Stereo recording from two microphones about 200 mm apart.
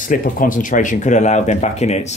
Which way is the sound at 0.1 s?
40° left (ahead or behind).